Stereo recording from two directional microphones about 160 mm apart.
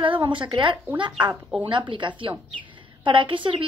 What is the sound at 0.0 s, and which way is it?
A woman's voice, 30° right (ahead or behind).